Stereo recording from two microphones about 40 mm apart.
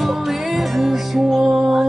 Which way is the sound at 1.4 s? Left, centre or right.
Centre.